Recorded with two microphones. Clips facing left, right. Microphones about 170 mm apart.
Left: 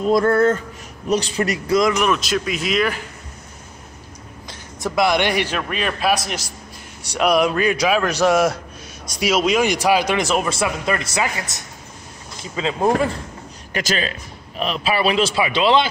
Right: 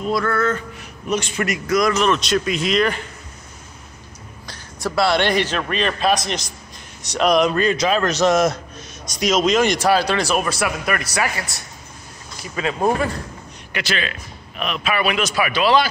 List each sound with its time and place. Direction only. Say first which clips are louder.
0.0 s a man's voice: left 5 dB; 40° left (ahead or behind)
0.3 s a man's voice: left 5 dB; 30° left (ahead or behind)
1.8 s a man's voice: right 1 dB; 15° left (ahead or behind)
4.5 s a man's voice: even; 20° left (ahead or behind)
13.7 s a man's voice: left 2 dB; 40° left (ahead or behind); by 15.9 s 20° left (ahead or behind)